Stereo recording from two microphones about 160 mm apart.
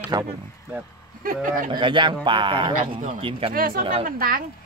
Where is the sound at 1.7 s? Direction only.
30° right (ahead or behind).